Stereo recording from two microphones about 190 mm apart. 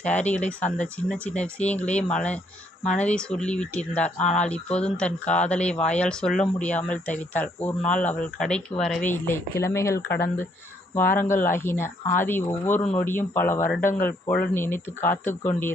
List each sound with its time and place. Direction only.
0.0 s speech: 10° left (ahead or behind)
4.2 s speech: 40° left (ahead or behind)
4.4 s speech: 5° left (ahead or behind)